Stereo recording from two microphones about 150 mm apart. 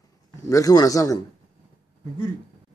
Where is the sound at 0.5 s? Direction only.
25° left (ahead or behind).